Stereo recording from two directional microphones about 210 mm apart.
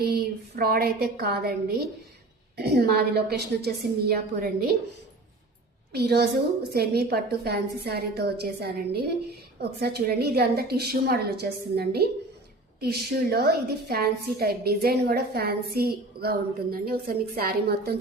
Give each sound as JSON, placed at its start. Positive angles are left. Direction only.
{"t": 0.0, "sound": "a woman's voice", "side_deg": -50}
{"t": 5.9, "sound": "a woman's voice", "side_deg": -50}